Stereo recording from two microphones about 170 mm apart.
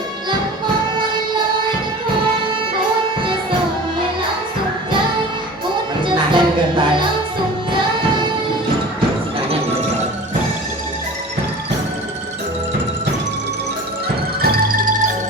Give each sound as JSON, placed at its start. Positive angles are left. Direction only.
{"t": 6.0, "sound": "music", "side_deg": -30}
{"t": 14.4, "sound": "music", "side_deg": -60}